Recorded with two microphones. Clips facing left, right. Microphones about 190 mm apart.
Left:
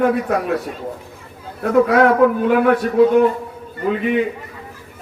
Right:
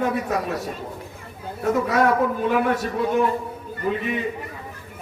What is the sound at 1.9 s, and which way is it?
Speech, 70° left (ahead or behind).